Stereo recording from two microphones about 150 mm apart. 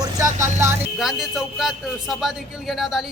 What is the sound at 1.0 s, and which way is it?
A man's voice, centre (ahead or behind).